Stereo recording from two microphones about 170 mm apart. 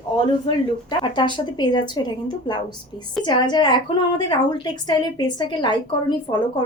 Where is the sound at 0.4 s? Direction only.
25° left (ahead or behind).